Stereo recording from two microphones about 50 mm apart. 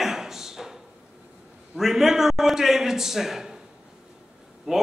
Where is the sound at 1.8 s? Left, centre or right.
Centre.